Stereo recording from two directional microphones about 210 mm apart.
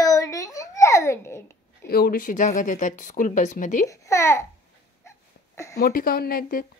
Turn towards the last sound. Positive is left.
turn(degrees=45)  # may be behind; listen again after turning